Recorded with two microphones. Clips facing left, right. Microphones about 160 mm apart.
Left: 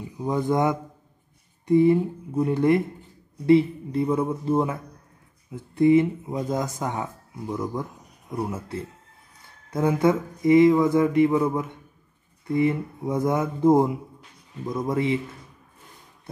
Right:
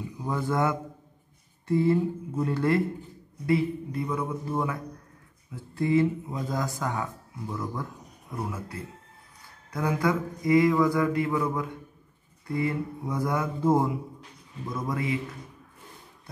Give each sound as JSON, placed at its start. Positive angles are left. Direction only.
{"t": 0.2, "sound": "speech", "side_deg": 20}